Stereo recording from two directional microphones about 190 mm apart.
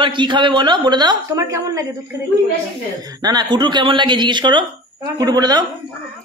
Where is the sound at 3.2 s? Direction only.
20° right (ahead or behind).